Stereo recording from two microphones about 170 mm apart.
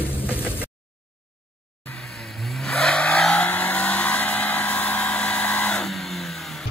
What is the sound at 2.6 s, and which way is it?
Vehicle, 5° left (ahead or behind).